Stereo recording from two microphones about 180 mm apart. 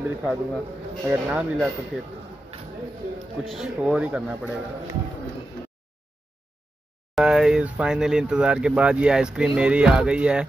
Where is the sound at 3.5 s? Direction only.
5° right (ahead or behind).